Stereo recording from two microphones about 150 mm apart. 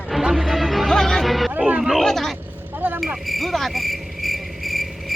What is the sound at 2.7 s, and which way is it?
Vehicle, 10° right (ahead or behind).